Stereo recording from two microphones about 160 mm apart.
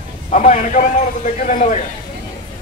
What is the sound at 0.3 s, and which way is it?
A man's voice, 50° left (ahead or behind).